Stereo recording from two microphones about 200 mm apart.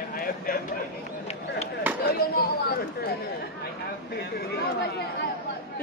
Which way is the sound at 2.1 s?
50° left (ahead or behind).